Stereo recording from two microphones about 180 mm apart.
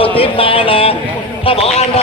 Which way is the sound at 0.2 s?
30° left (ahead or behind).